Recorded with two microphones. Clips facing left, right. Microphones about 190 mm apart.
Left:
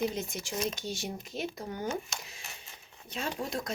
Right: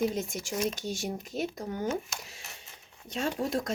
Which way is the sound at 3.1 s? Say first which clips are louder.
Right 5 dB; 45° right (ahead or behind).